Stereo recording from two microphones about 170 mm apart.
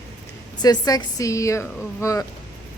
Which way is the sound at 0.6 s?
20° left (ahead or behind).